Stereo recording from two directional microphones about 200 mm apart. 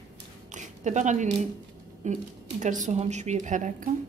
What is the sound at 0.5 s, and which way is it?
A woman's voice, 35° right (ahead or behind).